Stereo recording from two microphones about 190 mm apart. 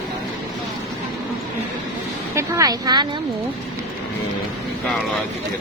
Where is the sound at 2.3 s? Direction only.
20° right (ahead or behind).